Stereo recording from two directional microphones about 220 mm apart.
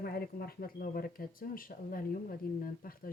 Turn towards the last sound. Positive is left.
turn(degrees=40)  # may be behind; listen again after turning